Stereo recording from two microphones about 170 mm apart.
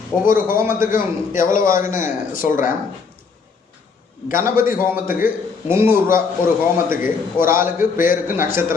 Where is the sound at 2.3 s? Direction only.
55° left (ahead or behind).